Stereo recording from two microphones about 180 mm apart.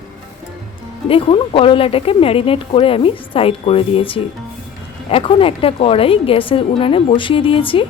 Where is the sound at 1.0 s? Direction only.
30° left (ahead or behind).